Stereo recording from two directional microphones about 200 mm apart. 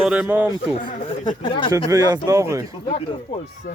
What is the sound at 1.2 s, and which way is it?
Speech, 25° left (ahead or behind).